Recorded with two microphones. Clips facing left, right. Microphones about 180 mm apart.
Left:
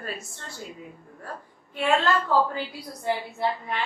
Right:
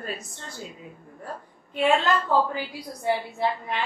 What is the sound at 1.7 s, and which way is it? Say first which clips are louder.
A woman's voice: right 1 dB; 20° right (ahead or behind).